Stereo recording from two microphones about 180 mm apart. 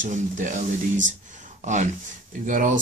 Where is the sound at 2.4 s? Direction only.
45° right (ahead or behind).